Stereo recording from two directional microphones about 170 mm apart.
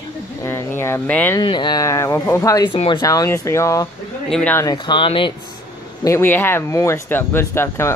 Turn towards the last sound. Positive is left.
turn(degrees=15)  # may be behind; listen again after turning